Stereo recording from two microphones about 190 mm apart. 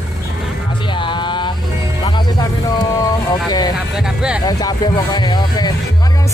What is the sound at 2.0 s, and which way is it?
Speech, 20° left (ahead or behind).